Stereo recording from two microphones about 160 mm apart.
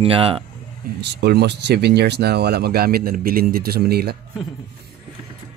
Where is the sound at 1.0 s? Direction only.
90° right.